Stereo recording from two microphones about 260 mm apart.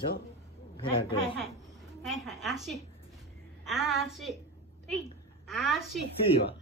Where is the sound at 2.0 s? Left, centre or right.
Centre.